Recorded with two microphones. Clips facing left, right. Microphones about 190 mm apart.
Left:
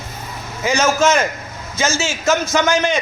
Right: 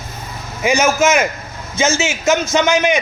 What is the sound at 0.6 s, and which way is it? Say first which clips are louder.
Speech: right 1 dB; 10° right (ahead or behind).